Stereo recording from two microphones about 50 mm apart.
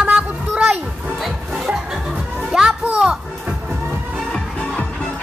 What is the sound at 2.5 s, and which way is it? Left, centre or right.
Children playing, centre.